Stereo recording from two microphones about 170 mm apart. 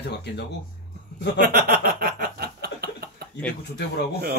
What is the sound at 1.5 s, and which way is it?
Chuckle, 60° right (ahead or behind).